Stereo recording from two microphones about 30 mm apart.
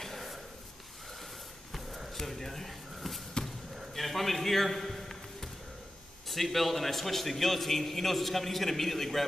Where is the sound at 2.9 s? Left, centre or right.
Centre.